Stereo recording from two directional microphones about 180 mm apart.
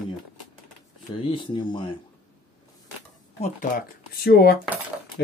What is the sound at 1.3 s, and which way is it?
Speech, 25° left (ahead or behind).